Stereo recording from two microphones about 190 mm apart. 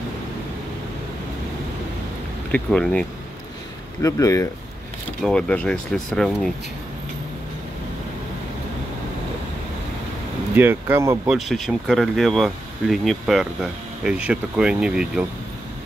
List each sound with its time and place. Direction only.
2.5 s speech: 5° left (ahead or behind)
4.0 s speech: 15° left (ahead or behind)
5.2 s speech: 5° left (ahead or behind)
10.5 s speech: 10° right (ahead or behind)
11.2 s speech: centre (ahead or behind)